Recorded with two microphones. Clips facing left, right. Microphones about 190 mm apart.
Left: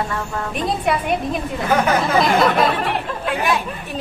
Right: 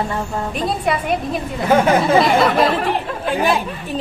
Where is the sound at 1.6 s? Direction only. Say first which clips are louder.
Right 4 dB; 30° right (ahead or behind).